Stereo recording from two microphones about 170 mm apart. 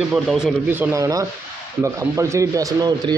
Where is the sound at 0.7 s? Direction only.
15° right (ahead or behind).